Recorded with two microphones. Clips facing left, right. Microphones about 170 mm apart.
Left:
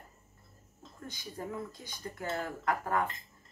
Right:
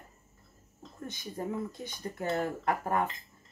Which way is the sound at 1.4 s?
30° right (ahead or behind).